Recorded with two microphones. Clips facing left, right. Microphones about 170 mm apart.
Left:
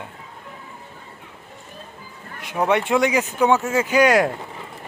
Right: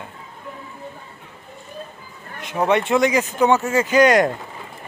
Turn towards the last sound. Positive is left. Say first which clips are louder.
# right 2 dB
turn(degrees=5)  # may be behind; listen again after turning